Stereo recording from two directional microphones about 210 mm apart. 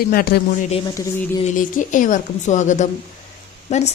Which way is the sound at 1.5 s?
40° left (ahead or behind).